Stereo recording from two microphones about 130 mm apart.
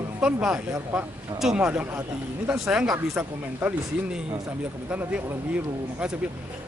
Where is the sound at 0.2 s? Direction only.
5° right (ahead or behind).